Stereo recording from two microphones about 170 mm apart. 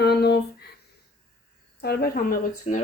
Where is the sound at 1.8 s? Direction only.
65° left (ahead or behind).